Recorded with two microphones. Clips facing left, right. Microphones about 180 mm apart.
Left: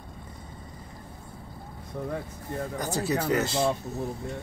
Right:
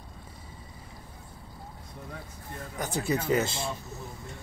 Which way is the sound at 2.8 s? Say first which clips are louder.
Even; centre (ahead or behind).